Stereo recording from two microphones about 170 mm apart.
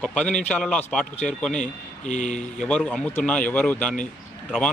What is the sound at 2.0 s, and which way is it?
Speech, 45° left (ahead or behind).